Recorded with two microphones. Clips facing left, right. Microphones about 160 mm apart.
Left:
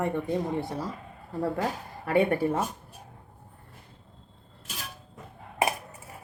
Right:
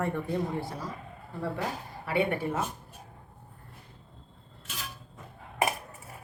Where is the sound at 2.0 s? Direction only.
40° left (ahead or behind).